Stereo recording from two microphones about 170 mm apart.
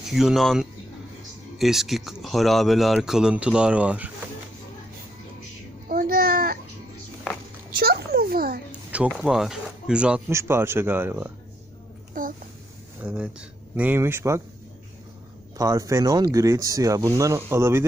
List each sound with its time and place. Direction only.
0.1 s speech: centre (ahead or behind)
5.9 s babbling: 60° right (ahead or behind)
7.8 s a sound: 65° right (ahead or behind)
9.0 s speech: centre (ahead or behind)
12.1 s a sound: 50° right (ahead or behind)
13.0 s speech: 5° right (ahead or behind)
15.5 s speech: 20° right (ahead or behind)